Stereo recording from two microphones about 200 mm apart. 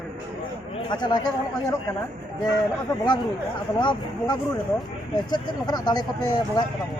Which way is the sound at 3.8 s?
25° left (ahead or behind).